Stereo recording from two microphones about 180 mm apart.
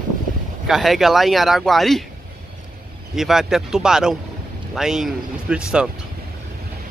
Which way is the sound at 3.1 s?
Centre (ahead or behind).